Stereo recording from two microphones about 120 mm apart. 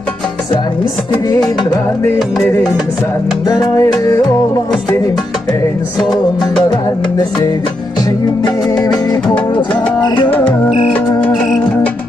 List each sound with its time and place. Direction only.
3.4 s music: 30° left (ahead or behind)
9.8 s music: 40° left (ahead or behind)